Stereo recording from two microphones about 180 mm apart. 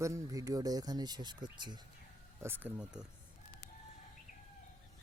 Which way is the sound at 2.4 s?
10° right (ahead or behind).